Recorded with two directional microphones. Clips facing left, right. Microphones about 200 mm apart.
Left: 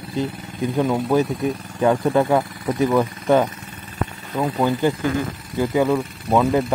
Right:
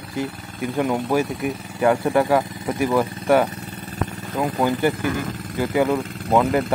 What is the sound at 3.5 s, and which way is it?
Vehicle, 40° right (ahead or behind).